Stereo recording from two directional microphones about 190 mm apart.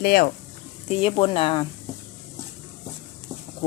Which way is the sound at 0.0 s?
55° left (ahead or behind).